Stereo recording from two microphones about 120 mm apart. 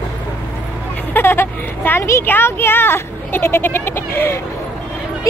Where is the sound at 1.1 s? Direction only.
20° left (ahead or behind).